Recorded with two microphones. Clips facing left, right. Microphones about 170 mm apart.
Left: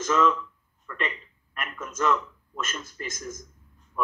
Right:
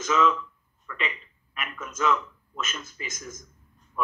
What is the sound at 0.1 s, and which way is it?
A man's voice, 10° right (ahead or behind).